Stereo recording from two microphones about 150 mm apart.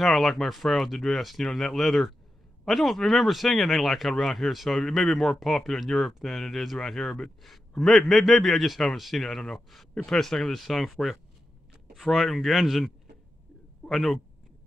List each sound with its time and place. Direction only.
0.0 s speech: centre (ahead or behind)